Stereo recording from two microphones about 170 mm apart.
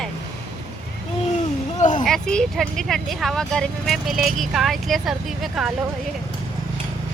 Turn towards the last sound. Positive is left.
turn(degrees=0)  # may be behind; listen again after turning